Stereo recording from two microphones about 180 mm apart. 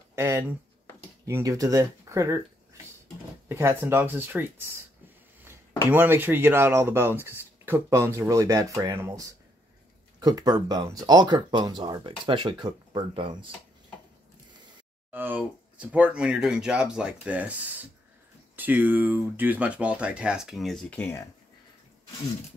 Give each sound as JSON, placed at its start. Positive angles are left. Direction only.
{"t": 0.1, "sound": "speech", "side_deg": -15}
{"t": 3.4, "sound": "speech", "side_deg": -15}
{"t": 5.9, "sound": "speech", "side_deg": -10}
{"t": 15.0, "sound": "speech", "side_deg": -10}